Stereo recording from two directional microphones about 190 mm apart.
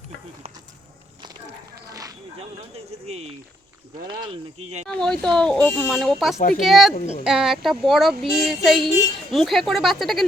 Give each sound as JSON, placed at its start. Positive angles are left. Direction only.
{"t": 1.9, "sound": "a sound", "side_deg": -20}
{"t": 2.7, "sound": "speech", "side_deg": -35}
{"t": 4.9, "sound": "speech", "side_deg": 5}